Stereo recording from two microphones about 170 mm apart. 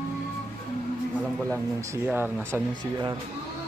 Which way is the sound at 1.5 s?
15° right (ahead or behind).